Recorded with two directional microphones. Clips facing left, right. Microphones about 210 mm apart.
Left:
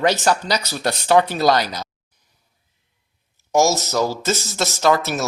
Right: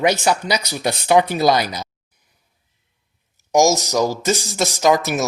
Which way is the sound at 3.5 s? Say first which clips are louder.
Right 2 dB; 15° right (ahead or behind).